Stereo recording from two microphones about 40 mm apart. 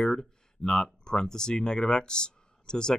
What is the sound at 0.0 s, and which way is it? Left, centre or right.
Speech, centre.